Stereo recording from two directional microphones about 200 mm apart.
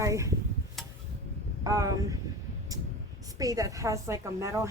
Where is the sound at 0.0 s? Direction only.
15° right (ahead or behind).